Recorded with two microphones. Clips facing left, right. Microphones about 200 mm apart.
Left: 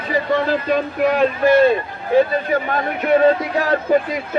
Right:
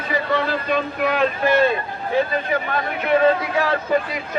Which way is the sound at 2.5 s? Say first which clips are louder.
Left 3 dB; 45° left (ahead or behind).